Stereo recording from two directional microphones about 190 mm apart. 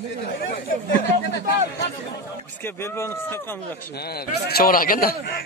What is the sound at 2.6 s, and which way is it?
Speech, 10° left (ahead or behind).